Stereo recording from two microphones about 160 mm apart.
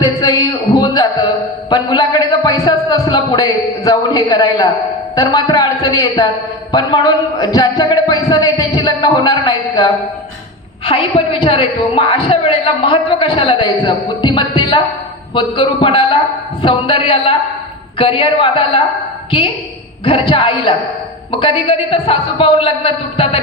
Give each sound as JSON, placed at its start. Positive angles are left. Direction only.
{"t": 0.0, "sound": "a sound", "side_deg": 25}
{"t": 1.7, "sound": "a man's voice", "side_deg": 25}
{"t": 20.1, "sound": "a woman's voice", "side_deg": 35}